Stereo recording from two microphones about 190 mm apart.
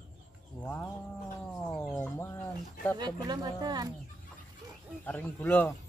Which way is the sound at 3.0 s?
20° right (ahead or behind).